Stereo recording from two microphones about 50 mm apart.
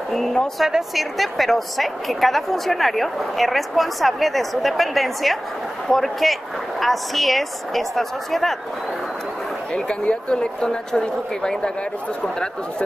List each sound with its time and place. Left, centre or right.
0.1 s a sound: centre
0.6 s a woman's voice: centre
9.8 s speech: centre